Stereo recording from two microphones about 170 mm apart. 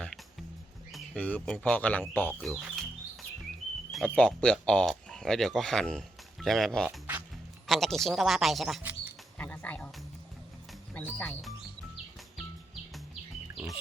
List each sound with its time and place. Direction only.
0.9 s speech: 10° left (ahead or behind)
6.8 s music: 10° right (ahead or behind)
7.7 s speech: centre (ahead or behind)
9.4 s music: 10° left (ahead or behind)